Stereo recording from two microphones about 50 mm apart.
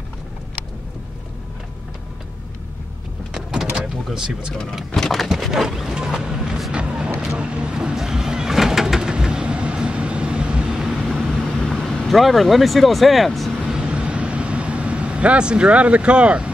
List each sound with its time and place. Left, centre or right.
3.3 s vehicle: centre
3.8 s speech: centre
5.4 s a sound: centre
7.3 s vehicle: right
10.7 s vehicle: centre
11.1 s vehicle: centre
13.7 s vehicle: centre